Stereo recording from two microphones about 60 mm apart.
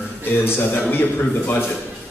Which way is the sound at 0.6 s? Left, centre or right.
Left.